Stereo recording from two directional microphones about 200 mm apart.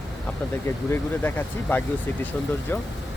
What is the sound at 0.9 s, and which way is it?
Speech, 10° left (ahead or behind).